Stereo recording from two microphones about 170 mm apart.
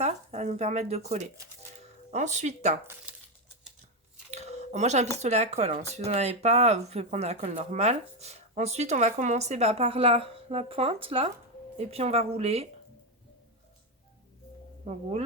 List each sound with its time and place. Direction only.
0.0 s speech: 40° right (ahead or behind)
2.8 s speech: 10° right (ahead or behind)
4.3 s a sound: 40° right (ahead or behind)
5.1 s speech: 40° right (ahead or behind)